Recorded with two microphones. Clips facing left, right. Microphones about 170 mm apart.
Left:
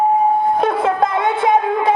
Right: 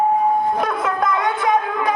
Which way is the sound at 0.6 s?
30° left (ahead or behind).